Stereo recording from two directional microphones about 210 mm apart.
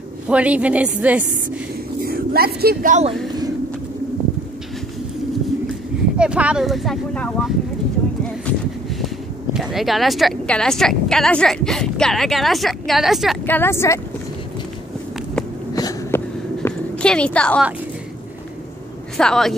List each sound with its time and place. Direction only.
0.3 s a woman's voice: 5° right (ahead or behind)
2.0 s speech: 45° right (ahead or behind)
6.1 s speech: 5° right (ahead or behind)
8.5 s a sound: 5° left (ahead or behind)
9.0 s speech: centre (ahead or behind)
13.5 s speech: 10° left (ahead or behind)
15.7 s a sound: 15° left (ahead or behind)
16.6 s a sound: 5° left (ahead or behind)
19.1 s speech: 5° left (ahead or behind)